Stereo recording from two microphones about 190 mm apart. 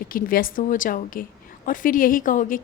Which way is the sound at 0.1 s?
50° left (ahead or behind).